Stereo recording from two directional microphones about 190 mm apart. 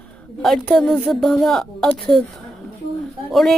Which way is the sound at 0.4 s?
5° left (ahead or behind).